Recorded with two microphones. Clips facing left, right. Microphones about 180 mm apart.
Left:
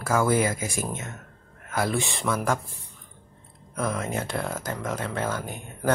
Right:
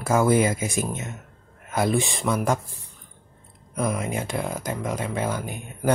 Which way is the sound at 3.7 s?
15° right (ahead or behind).